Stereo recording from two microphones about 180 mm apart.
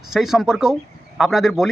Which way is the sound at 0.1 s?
Centre (ahead or behind).